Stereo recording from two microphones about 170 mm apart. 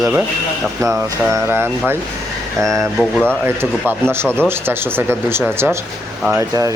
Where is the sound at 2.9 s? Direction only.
5° left (ahead or behind).